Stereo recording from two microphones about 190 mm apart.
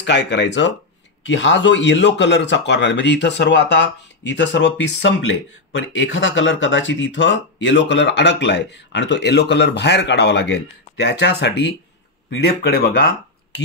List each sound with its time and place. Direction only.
0.0 s speech: 65° left (ahead or behind)